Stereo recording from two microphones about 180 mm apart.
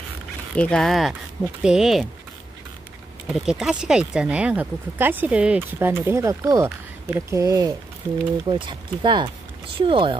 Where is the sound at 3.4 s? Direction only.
5° right (ahead or behind); by 10.2 s 30° right (ahead or behind).